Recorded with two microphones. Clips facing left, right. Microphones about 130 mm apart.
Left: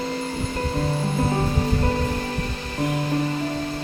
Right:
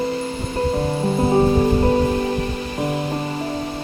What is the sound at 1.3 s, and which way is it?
Music, 30° right (ahead or behind).